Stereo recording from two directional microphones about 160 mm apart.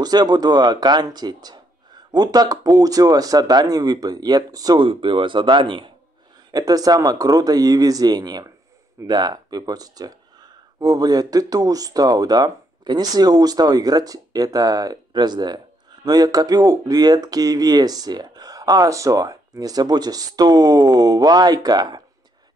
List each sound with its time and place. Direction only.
0.0 s speech: 25° right (ahead or behind)